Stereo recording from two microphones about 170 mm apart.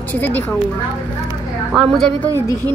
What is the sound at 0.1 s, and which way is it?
Speech, 10° left (ahead or behind).